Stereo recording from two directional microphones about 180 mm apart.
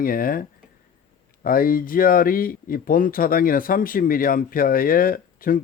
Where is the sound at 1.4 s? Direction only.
55° left (ahead or behind).